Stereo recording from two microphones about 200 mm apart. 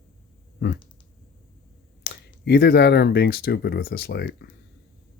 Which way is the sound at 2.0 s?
55° left (ahead or behind).